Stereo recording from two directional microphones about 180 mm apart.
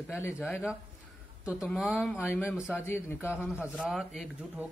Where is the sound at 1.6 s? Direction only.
5° right (ahead or behind).